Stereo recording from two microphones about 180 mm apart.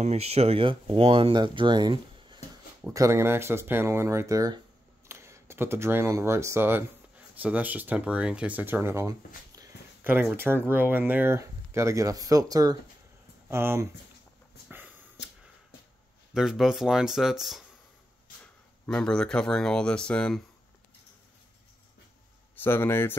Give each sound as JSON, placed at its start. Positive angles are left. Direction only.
{"t": 0.0, "sound": "speech", "side_deg": -35}
{"t": 9.6, "sound": "a sound", "side_deg": -10}
{"t": 10.3, "sound": "speech", "side_deg": -10}
{"t": 14.7, "sound": "a sound", "side_deg": -10}
{"t": 16.3, "sound": "speech", "side_deg": -5}
{"t": 18.9, "sound": "speech", "side_deg": 5}
{"t": 22.6, "sound": "speech", "side_deg": 10}